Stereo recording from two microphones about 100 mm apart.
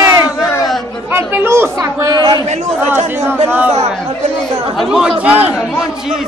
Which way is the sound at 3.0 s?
25° right (ahead or behind).